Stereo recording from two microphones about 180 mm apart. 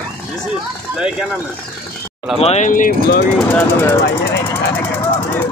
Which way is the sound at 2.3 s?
35° left (ahead or behind).